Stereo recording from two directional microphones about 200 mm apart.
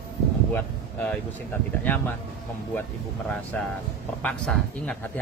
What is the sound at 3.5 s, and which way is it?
Speech, 5° left (ahead or behind).